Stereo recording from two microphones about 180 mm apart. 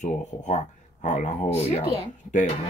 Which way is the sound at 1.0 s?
45° left (ahead or behind).